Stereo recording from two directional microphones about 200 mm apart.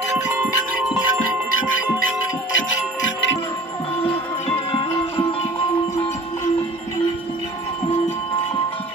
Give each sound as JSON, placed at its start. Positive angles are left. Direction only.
{"t": 0.4, "sound": "music", "side_deg": -5}
{"t": 1.5, "sound": "music", "side_deg": 80}
{"t": 4.0, "sound": "music", "side_deg": 30}